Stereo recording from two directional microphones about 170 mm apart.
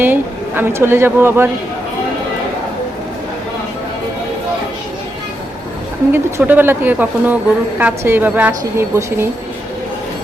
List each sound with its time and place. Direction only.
0.0 s speech: 10° right (ahead or behind)
6.1 s speech: 10° right (ahead or behind)